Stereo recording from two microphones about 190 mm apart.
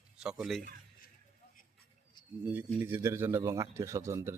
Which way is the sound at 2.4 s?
10° right (ahead or behind).